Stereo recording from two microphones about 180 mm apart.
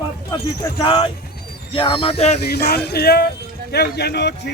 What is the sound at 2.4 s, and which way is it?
A man's voice, 60° left (ahead or behind).